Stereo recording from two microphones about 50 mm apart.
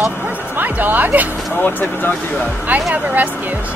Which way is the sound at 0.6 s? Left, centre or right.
Right.